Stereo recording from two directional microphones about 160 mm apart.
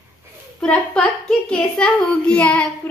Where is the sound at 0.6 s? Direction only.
10° left (ahead or behind).